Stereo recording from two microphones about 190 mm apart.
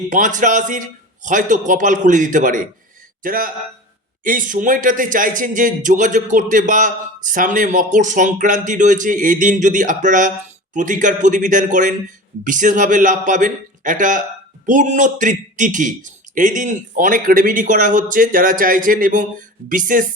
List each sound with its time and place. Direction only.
0.1 s speech: 40° right (ahead or behind)